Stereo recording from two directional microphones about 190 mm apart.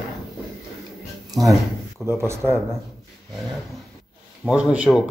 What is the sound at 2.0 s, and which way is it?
Speech, 15° right (ahead or behind).